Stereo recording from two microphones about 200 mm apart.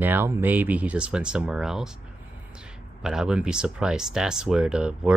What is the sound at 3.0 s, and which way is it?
Speech, 5° right (ahead or behind).